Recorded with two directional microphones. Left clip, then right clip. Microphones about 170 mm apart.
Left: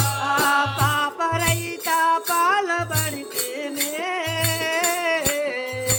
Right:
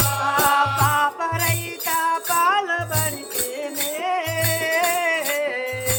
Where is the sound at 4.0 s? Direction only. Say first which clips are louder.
Right 3 dB; 25° left (ahead or behind).